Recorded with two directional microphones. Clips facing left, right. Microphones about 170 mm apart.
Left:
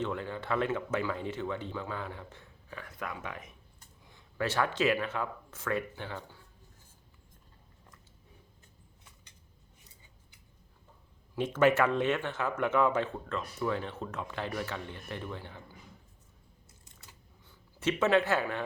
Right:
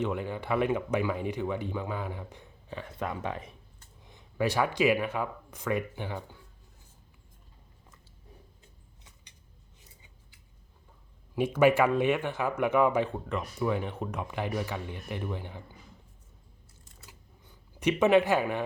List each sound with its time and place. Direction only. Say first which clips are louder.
0.0 s speech: right 3 dB; 15° right (ahead or behind); by 3.5 s 30° right (ahead or behind)
4.0 s speech: right 4 dB; 15° right (ahead or behind)
11.3 s speech: right 3 dB; 10° right (ahead or behind)
17.1 s a sound: right 3 dB; 15° right (ahead or behind)